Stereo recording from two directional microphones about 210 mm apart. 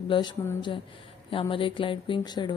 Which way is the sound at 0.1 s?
20° left (ahead or behind).